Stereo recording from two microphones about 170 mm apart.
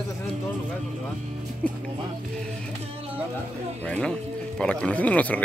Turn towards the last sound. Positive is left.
turn(degrees=10)  # may be behind; listen again after turning